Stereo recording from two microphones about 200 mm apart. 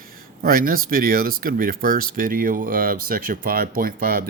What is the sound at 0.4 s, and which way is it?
Speech, 45° right (ahead or behind).